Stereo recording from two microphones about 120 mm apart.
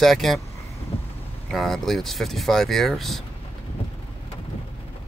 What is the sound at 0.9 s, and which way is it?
Vehicle, 55° left (ahead or behind).